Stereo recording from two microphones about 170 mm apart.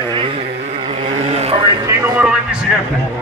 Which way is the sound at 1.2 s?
35° right (ahead or behind).